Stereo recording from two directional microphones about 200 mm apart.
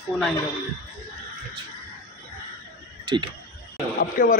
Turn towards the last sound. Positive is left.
turn(degrees=40)  # may be behind; listen again after turning